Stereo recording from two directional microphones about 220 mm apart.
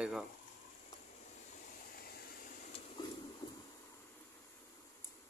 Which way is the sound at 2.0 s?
45° left (ahead or behind).